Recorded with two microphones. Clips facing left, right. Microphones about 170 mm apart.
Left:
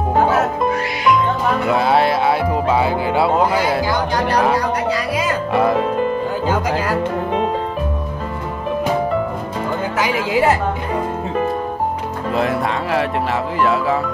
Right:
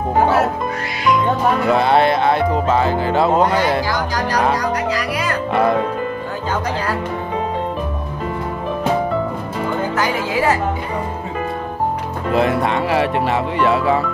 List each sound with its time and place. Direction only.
1.7 s speech: centre (ahead or behind)
5.5 s speech: centre (ahead or behind)
9.9 s speech: 10° left (ahead or behind)
12.3 s speech: centre (ahead or behind)